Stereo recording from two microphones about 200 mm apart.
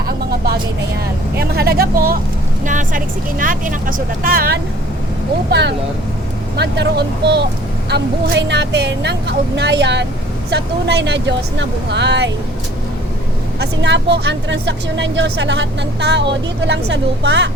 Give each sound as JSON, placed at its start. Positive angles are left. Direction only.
{"t": 1.4, "sound": "speech", "side_deg": -50}
{"t": 13.6, "sound": "speech", "side_deg": -60}